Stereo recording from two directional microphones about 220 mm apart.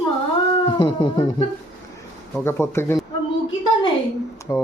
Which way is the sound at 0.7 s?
20° left (ahead or behind).